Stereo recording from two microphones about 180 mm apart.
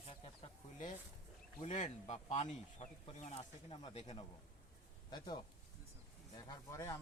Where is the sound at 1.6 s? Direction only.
40° left (ahead or behind); by 5.4 s 25° left (ahead or behind).